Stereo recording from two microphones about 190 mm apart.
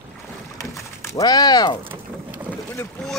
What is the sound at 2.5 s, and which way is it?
Boat, 5° left (ahead or behind).